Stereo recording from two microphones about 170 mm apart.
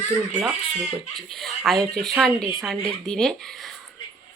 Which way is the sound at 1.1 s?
Centre (ahead or behind).